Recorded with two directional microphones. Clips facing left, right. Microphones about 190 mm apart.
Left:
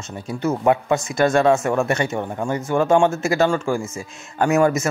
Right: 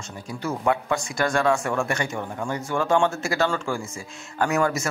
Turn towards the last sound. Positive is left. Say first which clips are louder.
# left 6 dB
turn(degrees=20)  # may be behind; listen again after turning